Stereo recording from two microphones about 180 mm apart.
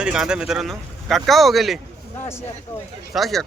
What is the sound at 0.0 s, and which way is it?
A man's voice, 5° right (ahead or behind).